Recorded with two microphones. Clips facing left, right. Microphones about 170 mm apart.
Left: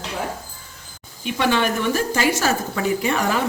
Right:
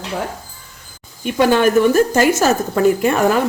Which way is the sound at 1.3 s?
45° right (ahead or behind).